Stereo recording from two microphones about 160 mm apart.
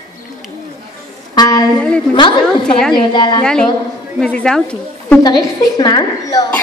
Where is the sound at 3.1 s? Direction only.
30° left (ahead or behind).